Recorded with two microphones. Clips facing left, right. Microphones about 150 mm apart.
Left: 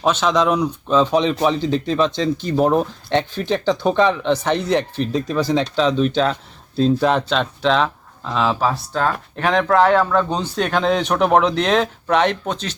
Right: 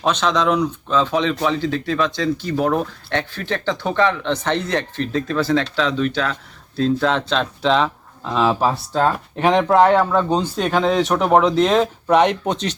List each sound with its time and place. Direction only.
0.0 s speech: 5° left (ahead or behind); by 12.5 s 10° right (ahead or behind)